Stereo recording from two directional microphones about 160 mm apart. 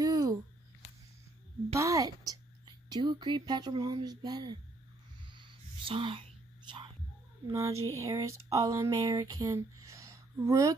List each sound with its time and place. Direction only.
0.0 s a sound: 25° right (ahead or behind)
1.8 s a woman's voice: 20° right (ahead or behind)
5.3 s music: 30° right (ahead or behind)
7.4 s speech: 20° right (ahead or behind)